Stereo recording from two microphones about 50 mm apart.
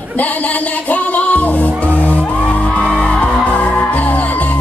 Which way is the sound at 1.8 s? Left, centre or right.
Left.